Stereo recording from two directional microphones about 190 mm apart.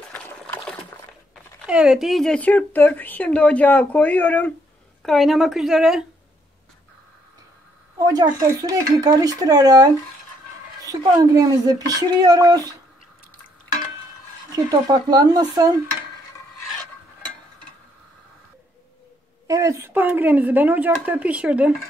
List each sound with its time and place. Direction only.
0.1 s a sound: 10° left (ahead or behind)
1.7 s a woman's voice: 5° right (ahead or behind)
8.0 s speech: 20° right (ahead or behind)
14.5 s speech: 20° right (ahead or behind)
19.4 s speech: 15° right (ahead or behind)